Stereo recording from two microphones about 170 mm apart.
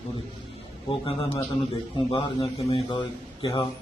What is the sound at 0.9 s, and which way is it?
A man's voice, 30° left (ahead or behind).